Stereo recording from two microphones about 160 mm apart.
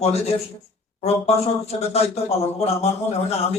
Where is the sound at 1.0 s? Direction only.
40° left (ahead or behind).